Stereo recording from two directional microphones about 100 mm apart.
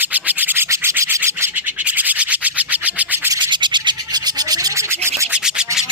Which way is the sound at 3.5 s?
50° right (ahead or behind).